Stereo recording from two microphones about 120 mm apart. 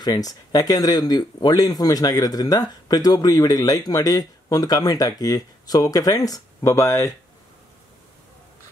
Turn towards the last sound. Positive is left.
turn(degrees=25)  # may be behind; listen again after turning